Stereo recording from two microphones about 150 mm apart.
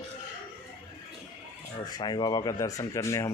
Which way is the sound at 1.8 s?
25° left (ahead or behind).